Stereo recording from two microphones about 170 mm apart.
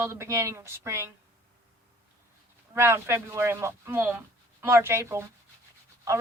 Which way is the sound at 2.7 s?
15° right (ahead or behind).